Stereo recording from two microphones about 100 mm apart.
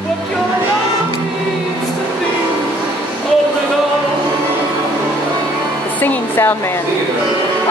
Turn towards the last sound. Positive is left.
turn(degrees=20)  # may be behind; listen again after turning